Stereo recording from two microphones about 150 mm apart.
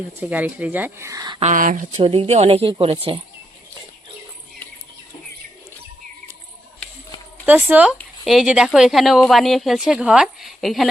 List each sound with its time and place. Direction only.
0.2 s speech: 10° right (ahead or behind)
1.4 s speech: 55° right (ahead or behind)
2.0 s speech: 40° right (ahead or behind)
7.4 s speech: 10° right (ahead or behind)